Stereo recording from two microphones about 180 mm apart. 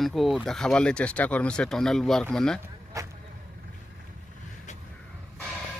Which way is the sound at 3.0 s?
20° right (ahead or behind).